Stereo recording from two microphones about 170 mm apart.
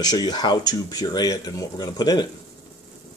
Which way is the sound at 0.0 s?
25° left (ahead or behind).